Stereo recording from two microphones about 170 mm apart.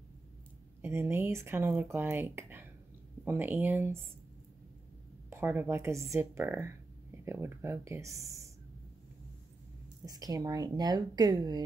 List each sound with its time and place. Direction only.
0.8 s speech: 15° right (ahead or behind)
5.3 s speech: 10° right (ahead or behind)
10.0 s speech: 20° right (ahead or behind)